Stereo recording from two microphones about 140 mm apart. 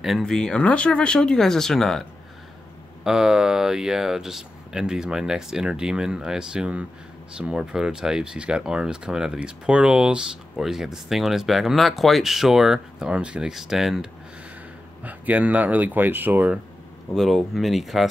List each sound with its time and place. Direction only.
0.0 s speech: centre (ahead or behind)
15.0 s speech: 10° right (ahead or behind)
17.1 s speech: centre (ahead or behind)